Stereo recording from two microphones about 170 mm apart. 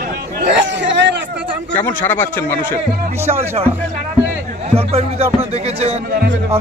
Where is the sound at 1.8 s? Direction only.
10° left (ahead or behind).